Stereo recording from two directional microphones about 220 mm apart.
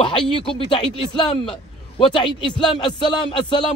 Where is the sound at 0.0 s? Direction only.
25° left (ahead or behind).